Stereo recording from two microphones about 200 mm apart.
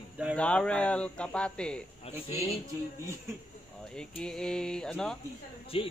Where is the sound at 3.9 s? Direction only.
5° left (ahead or behind).